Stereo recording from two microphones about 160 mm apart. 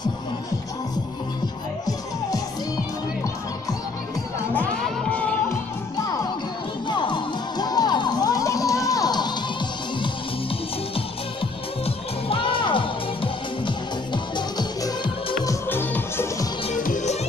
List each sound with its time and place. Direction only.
4.6 s music: 10° left (ahead or behind)
6.9 s music: 30° left (ahead or behind)
11.8 s music: 35° left (ahead or behind); by 16.4 s 15° left (ahead or behind)
16.7 s music: 55° left (ahead or behind)